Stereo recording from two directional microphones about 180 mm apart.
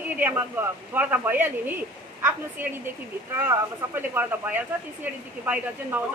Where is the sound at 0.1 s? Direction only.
10° right (ahead or behind).